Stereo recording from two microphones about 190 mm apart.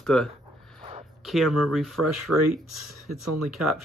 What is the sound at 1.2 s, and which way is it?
A man's voice, centre (ahead or behind).